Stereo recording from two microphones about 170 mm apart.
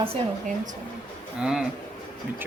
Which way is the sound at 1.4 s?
5° right (ahead or behind).